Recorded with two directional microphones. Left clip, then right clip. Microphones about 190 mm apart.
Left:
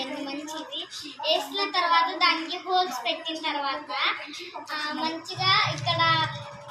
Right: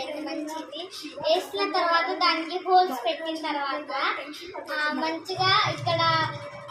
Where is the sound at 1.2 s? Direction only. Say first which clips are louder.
Right 1 dB; 15° right (ahead or behind).